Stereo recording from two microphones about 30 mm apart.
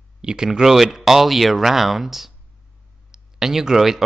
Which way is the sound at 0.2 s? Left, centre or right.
Right.